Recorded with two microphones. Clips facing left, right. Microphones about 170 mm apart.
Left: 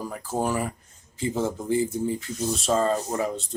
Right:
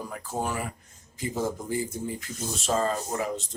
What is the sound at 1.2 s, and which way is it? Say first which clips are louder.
Speech: left 3 dB; 25° left (ahead or behind).